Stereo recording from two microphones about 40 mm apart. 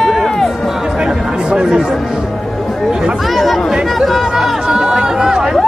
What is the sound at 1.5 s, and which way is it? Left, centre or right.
Chatter, centre.